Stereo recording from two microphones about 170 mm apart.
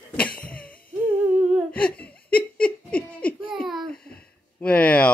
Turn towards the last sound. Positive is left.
turn(degrees=10)  # may be behind; listen again after turning